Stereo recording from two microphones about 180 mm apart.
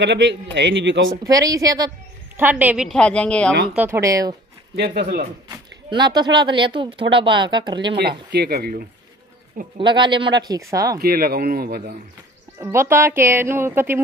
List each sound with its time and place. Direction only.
0.0 s a man's voice: 80° right
1.1 s speech: 20° right (ahead or behind)
2.9 s a woman's voice: 5° left (ahead or behind)
3.7 s speech: 10° right (ahead or behind)
4.7 s speech: 65° right (ahead or behind)
5.5 s speech: 25° right (ahead or behind)
8.3 s a man's voice: 65° right (ahead or behind)
9.8 s speech: 25° right (ahead or behind)
11.0 s a man's voice: 55° right (ahead or behind)
12.5 s speech: 15° right (ahead or behind)